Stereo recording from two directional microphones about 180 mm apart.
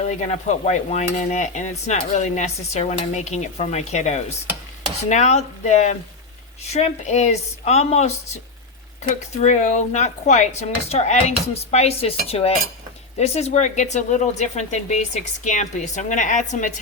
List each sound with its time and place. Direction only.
0.0 s stir: 40° left (ahead or behind)
9.4 s stir: 40° left (ahead or behind)
15.4 s a woman's voice: 45° left (ahead or behind)